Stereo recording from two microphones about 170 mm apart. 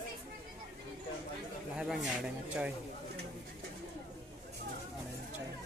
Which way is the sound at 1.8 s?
5° right (ahead or behind).